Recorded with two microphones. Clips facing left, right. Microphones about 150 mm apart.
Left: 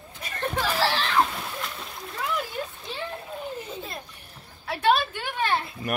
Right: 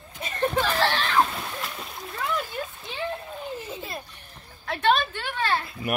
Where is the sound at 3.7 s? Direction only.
5° right (ahead or behind).